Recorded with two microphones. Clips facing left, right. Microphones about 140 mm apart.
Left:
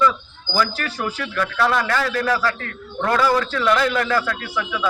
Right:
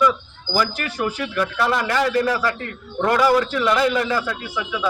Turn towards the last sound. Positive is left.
turn(degrees=-15)  # may be behind; listen again after turning